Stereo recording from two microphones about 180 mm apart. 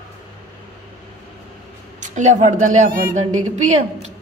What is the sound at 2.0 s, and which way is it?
Speech, 40° right (ahead or behind).